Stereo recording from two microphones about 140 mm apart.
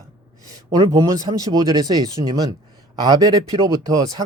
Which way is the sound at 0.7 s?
30° right (ahead or behind).